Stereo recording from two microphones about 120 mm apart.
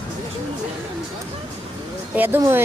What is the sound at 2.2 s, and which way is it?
Speech, 20° right (ahead or behind).